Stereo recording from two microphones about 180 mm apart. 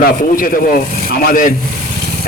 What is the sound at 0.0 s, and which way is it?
A man's voice, 50° left (ahead or behind).